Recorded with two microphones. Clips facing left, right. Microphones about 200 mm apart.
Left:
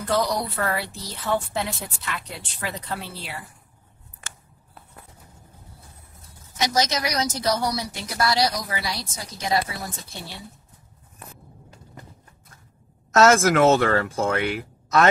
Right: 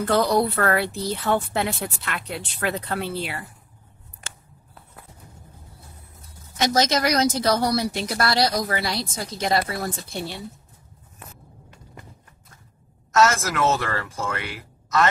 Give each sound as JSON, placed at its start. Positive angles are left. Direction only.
{"t": 0.1, "sound": "speech", "side_deg": -60}
{"t": 6.6, "sound": "speech", "side_deg": -55}
{"t": 13.1, "sound": "speech", "side_deg": 60}